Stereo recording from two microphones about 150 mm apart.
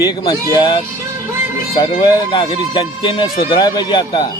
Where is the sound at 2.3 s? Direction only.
35° left (ahead or behind).